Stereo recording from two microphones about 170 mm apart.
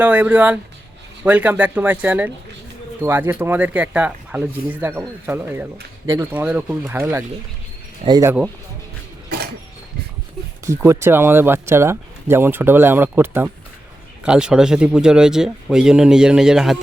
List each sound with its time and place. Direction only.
0.0 s speech: 10° right (ahead or behind)
10.7 s speech: 15° right (ahead or behind)